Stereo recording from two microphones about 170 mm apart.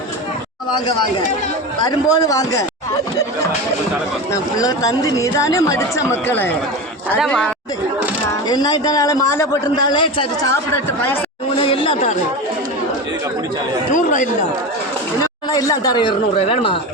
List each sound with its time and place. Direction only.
1.8 s speech: 20° left (ahead or behind)
4.3 s speech: 20° left (ahead or behind)
7.2 s speech: centre (ahead or behind)
8.4 s speech: 25° left (ahead or behind)
9.9 s speech: 30° left (ahead or behind)
10.4 s speech: 15° left (ahead or behind)
11.6 s speech: 30° left (ahead or behind)
13.9 s speech: 45° left (ahead or behind)
15.4 s speech: 20° left (ahead or behind)